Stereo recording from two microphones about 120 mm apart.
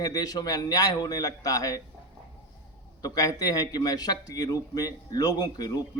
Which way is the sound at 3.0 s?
30° left (ahead or behind).